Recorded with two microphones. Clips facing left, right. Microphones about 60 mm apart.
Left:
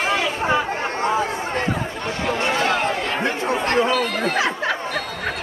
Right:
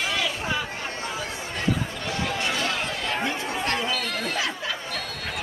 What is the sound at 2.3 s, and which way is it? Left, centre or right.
Chatter, left.